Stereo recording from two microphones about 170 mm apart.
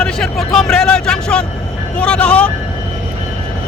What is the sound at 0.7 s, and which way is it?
Speech, 5° left (ahead or behind).